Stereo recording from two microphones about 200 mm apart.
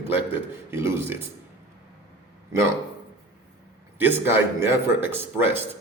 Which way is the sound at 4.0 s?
10° right (ahead or behind).